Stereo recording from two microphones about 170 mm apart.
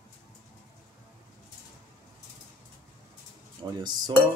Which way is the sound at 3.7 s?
25° right (ahead or behind).